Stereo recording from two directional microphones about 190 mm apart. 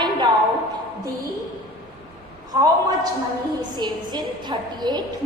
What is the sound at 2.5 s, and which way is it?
A woman's voice, 20° right (ahead or behind).